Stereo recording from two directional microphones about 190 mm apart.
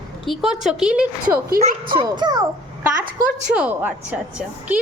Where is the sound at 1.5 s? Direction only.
50° right (ahead or behind).